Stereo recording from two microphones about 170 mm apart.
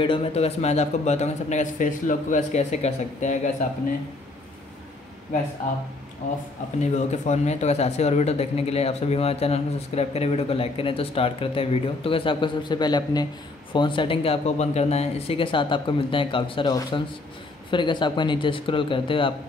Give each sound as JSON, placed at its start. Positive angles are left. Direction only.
{"t": 0.0, "sound": "speech", "side_deg": 35}
{"t": 6.8, "sound": "speech", "side_deg": 40}